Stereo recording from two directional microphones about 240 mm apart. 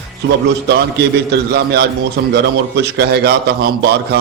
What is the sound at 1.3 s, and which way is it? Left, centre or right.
A man's voice, right.